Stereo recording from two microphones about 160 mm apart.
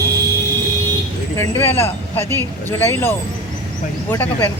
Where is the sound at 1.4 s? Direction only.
15° left (ahead or behind).